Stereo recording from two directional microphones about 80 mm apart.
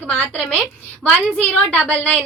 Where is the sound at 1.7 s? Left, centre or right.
Centre.